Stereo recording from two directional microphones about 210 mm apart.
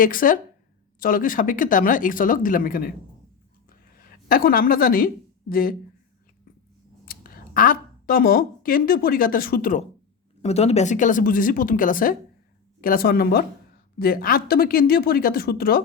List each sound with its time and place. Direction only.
0.0 s speech: 40° left (ahead or behind)
3.7 s a sound: 45° left (ahead or behind)
7.0 s speech: 45° left (ahead or behind)
10.4 s speech: 30° left (ahead or behind); by 15.8 s 45° left (ahead or behind)